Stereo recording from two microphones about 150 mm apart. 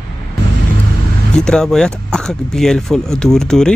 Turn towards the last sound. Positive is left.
turn(degrees=5)  # may be behind; listen again after turning